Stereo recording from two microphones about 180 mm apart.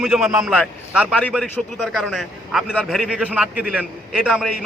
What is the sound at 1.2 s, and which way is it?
A man's voice, 5° left (ahead or behind).